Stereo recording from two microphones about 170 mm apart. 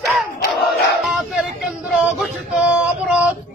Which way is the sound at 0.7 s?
Centre (ahead or behind).